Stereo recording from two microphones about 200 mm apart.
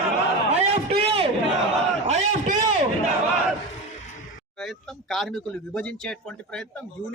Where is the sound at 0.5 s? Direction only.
35° right (ahead or behind).